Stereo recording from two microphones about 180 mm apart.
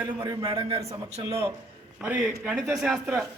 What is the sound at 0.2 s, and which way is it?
A man's voice, 25° right (ahead or behind).